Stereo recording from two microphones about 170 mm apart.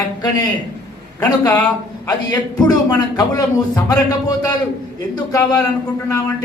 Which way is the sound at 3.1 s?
20° left (ahead or behind).